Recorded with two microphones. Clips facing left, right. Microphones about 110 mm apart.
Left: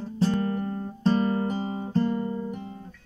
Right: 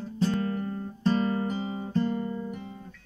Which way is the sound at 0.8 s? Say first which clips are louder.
Left 2 dB; 30° left (ahead or behind).